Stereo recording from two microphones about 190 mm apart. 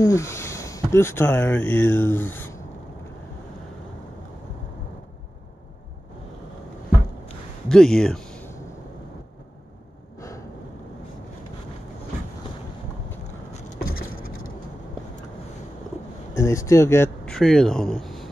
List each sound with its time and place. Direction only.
0.0 s speech: 15° left (ahead or behind)
7.6 s a sound: 5° left (ahead or behind)
13.5 s vehicle: 35° left (ahead or behind)
13.7 s vehicle: 50° left (ahead or behind)
16.3 s speech: 15° left (ahead or behind)